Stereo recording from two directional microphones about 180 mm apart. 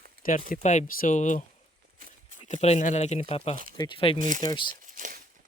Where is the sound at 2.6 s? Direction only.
40° left (ahead or behind).